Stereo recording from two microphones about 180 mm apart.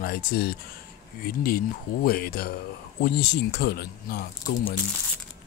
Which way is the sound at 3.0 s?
65° left (ahead or behind).